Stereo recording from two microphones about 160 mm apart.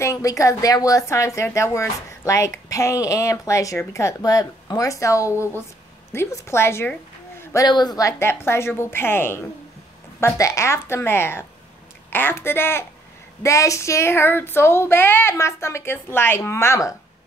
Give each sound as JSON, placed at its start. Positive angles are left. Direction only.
{"t": 0.0, "sound": "speech", "side_deg": 20}